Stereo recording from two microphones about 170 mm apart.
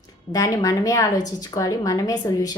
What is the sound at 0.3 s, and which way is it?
A woman's voice, 20° left (ahead or behind).